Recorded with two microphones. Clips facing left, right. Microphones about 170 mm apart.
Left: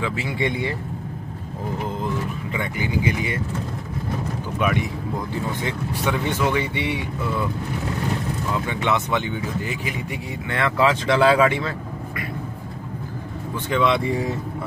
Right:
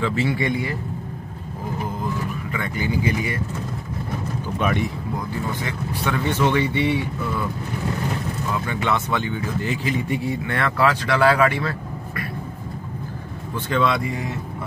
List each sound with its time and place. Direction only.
0.0 s speech: 10° left (ahead or behind)
0.4 s speech: 25° left (ahead or behind)
2.5 s speech: 20° left (ahead or behind)
4.6 s speech: 10° left (ahead or behind)
8.6 s speech: 20° left (ahead or behind)
13.7 s speech: 20° left (ahead or behind)